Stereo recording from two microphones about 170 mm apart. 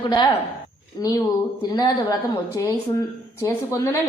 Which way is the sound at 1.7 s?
20° left (ahead or behind).